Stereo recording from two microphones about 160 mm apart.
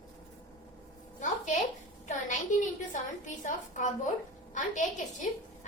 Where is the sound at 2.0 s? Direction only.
50° left (ahead or behind).